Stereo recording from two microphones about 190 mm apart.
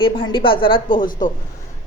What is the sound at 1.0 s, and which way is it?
Speech, 45° left (ahead or behind).